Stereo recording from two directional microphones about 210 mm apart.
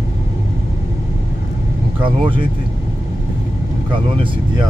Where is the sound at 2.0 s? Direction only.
25° right (ahead or behind).